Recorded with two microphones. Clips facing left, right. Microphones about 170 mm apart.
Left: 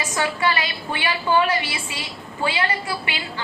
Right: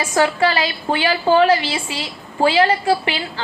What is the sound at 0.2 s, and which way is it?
A woman's voice, 35° right (ahead or behind).